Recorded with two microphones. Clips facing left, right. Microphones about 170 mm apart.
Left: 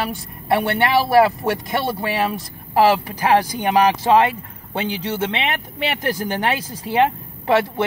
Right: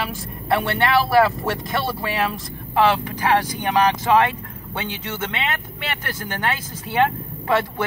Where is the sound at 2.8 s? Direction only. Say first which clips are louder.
Left 3 dB; 40° left (ahead or behind).